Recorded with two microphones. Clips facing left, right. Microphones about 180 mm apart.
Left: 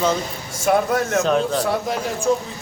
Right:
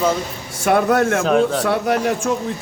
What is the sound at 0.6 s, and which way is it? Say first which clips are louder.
Speech: right 3 dB; 70° right (ahead or behind).